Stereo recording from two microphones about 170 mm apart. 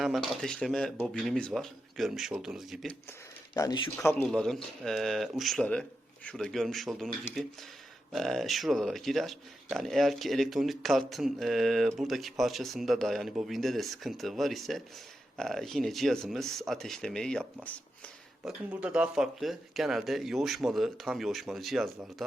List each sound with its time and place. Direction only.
0.3 s speech: 5° left (ahead or behind)
3.1 s speech: 20° left (ahead or behind)
4.2 s speech: centre (ahead or behind)
18.4 s speech: 5° right (ahead or behind)